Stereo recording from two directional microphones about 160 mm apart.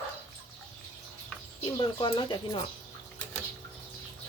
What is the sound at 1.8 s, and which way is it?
Speech, 30° left (ahead or behind).